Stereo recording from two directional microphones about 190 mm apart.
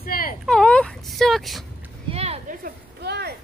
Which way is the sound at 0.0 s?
50° left (ahead or behind).